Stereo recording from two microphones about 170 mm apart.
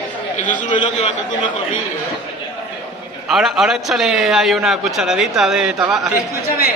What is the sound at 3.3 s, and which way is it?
A man's voice, centre (ahead or behind).